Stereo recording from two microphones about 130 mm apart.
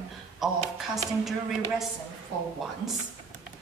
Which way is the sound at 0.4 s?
Centre (ahead or behind).